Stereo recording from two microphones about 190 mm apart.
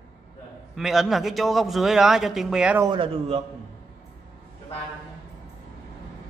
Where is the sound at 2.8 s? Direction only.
25° right (ahead or behind).